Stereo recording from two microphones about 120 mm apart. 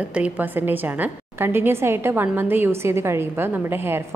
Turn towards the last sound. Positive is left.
turn(degrees=-20)  # may be behind; listen again after turning